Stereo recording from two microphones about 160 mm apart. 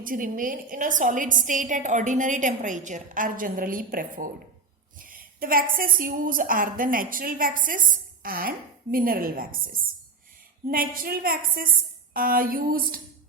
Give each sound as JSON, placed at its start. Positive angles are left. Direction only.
{"t": 0.0, "sound": "a woman's voice", "side_deg": -60}